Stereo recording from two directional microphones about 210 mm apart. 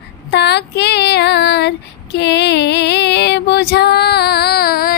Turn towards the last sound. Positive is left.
turn(degrees=45)  # may be behind; listen again after turning